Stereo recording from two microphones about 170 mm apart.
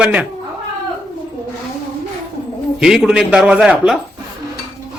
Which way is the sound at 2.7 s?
5° right (ahead or behind).